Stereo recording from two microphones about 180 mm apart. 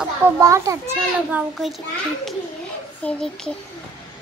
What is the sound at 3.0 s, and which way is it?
Speech, 5° left (ahead or behind).